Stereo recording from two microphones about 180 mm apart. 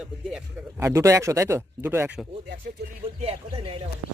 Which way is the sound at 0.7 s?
15° right (ahead or behind).